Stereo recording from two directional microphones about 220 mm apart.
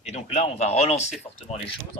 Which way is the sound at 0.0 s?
30° left (ahead or behind).